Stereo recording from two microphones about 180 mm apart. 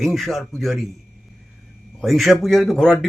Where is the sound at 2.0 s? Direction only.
Centre (ahead or behind).